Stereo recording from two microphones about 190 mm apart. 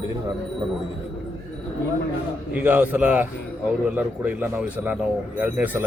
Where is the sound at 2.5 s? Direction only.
10° right (ahead or behind).